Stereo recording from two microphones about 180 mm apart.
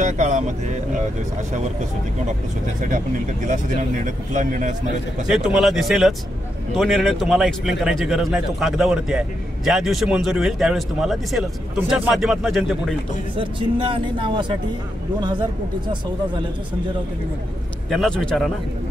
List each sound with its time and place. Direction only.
0.0 s speech: 40° right (ahead or behind)
4.0 s speech: 45° right (ahead or behind)
5.3 s a man's voice: centre (ahead or behind)
13.4 s speech: 30° right (ahead or behind)
17.8 s a man's voice: centre (ahead or behind)